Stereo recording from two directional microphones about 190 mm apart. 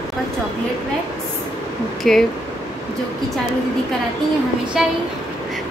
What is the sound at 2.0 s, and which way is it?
Speech, centre (ahead or behind).